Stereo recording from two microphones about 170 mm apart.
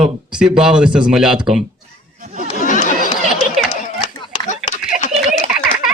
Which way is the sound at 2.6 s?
50° left (ahead or behind).